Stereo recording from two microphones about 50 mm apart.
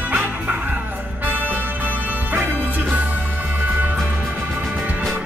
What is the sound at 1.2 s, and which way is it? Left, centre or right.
Music, right.